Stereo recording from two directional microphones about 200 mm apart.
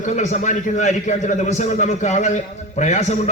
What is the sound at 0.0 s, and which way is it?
A man's voice, 35° left (ahead or behind).